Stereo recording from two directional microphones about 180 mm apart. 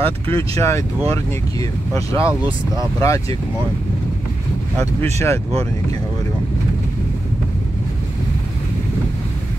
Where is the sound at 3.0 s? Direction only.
20° left (ahead or behind).